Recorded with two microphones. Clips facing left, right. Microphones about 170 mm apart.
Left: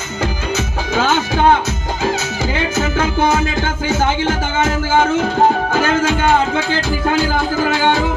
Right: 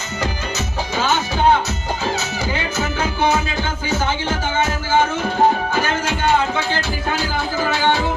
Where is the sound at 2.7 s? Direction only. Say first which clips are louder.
Left 5 dB; 50° left (ahead or behind).